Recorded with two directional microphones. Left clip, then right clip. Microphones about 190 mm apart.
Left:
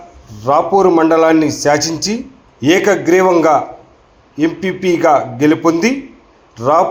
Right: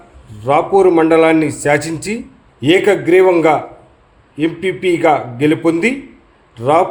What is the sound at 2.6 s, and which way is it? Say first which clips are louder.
A man's voice: even; 5° left (ahead or behind).